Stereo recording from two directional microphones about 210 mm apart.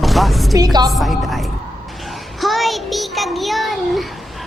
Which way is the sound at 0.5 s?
20° right (ahead or behind).